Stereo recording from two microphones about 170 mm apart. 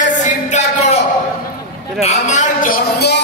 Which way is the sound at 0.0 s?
45° left (ahead or behind).